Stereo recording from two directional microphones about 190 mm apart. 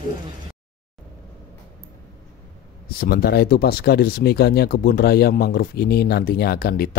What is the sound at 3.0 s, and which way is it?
Speech, 55° left (ahead or behind).